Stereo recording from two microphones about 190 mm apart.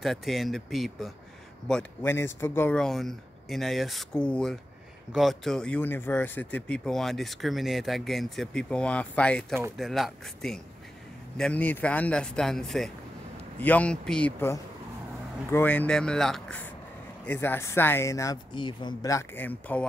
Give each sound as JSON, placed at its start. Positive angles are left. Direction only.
{"t": 0.0, "sound": "speech", "side_deg": 0}